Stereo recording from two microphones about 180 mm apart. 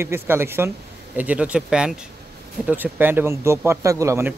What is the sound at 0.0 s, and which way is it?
A man's voice, 15° right (ahead or behind).